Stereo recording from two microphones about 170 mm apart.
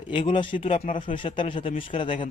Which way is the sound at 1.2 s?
30° left (ahead or behind).